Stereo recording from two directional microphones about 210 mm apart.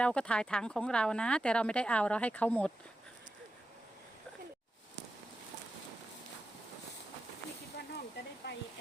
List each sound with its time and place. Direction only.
0.0 s speech: 5° left (ahead or behind)
8.4 s speech: 55° left (ahead or behind)